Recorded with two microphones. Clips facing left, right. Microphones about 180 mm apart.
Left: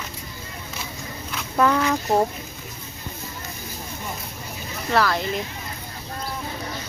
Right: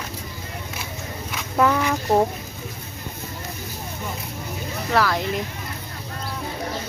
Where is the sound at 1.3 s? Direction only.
10° right (ahead or behind).